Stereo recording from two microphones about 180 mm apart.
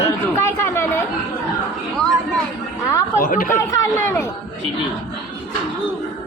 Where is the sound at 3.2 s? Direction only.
50° left (ahead or behind).